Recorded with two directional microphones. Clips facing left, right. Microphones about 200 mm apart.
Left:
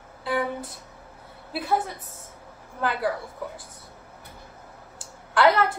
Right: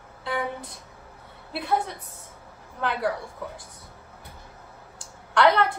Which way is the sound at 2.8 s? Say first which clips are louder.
Left 1 dB; centre (ahead or behind).